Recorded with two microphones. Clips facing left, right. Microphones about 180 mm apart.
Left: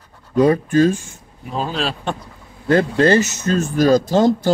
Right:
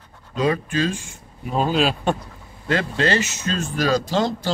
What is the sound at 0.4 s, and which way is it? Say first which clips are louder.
Speech: left 8 dB; 50° left (ahead or behind).